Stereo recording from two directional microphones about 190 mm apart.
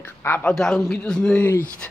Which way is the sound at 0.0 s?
10° left (ahead or behind).